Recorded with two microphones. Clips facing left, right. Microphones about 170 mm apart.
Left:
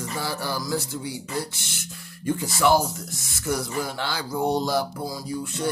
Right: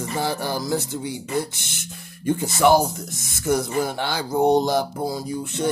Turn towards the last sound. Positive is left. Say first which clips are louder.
# right 4 dB
turn(degrees=-20)  # may be behind; listen again after turning